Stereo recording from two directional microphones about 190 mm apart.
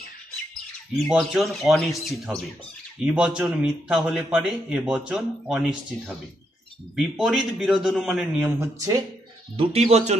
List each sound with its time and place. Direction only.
0.9 s a man's voice: centre (ahead or behind); by 9.0 s 15° right (ahead or behind)
9.6 s speech: 35° right (ahead or behind)